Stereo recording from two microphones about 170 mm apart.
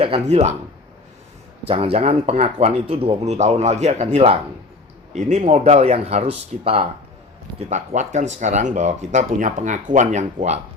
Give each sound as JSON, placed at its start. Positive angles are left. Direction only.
{"t": 0.0, "sound": "speech", "side_deg": -35}
{"t": 1.6, "sound": "speech", "side_deg": -35}
{"t": 7.7, "sound": "speech", "side_deg": -45}